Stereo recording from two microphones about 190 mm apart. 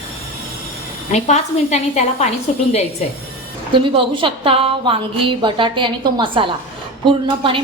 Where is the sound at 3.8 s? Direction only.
25° right (ahead or behind).